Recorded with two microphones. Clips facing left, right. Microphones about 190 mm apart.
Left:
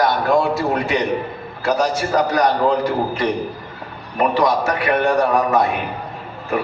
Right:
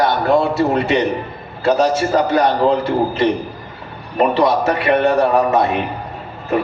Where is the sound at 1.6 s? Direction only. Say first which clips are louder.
Right 4 dB; 30° right (ahead or behind).